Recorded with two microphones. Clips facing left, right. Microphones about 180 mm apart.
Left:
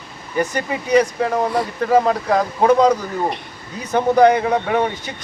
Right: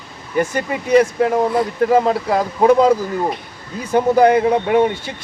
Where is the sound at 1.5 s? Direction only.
Centre (ahead or behind).